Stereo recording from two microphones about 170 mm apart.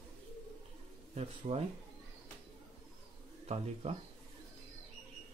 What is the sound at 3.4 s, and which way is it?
Speech, 40° right (ahead or behind).